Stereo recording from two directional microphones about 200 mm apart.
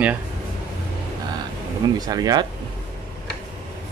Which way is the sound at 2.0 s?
20° right (ahead or behind).